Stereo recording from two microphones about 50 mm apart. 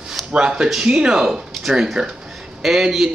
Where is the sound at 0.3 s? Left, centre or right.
Right.